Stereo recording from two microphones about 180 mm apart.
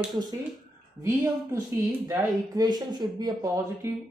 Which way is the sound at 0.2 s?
20° right (ahead or behind).